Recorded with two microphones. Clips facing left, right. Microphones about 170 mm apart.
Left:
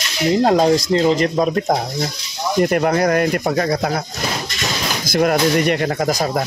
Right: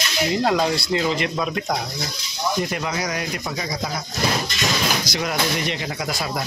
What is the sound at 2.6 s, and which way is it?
Speech, 55° left (ahead or behind).